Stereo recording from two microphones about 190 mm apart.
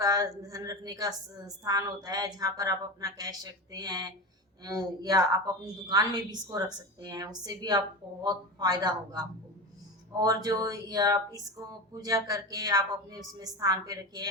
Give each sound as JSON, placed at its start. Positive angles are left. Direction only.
{"t": 0.0, "sound": "a woman's voice", "side_deg": -20}